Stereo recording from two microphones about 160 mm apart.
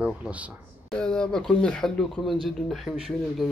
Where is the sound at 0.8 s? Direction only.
5° left (ahead or behind).